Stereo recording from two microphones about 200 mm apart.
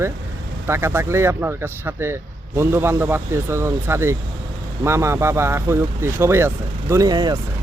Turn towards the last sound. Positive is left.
turn(degrees=-20)  # may be behind; listen again after turning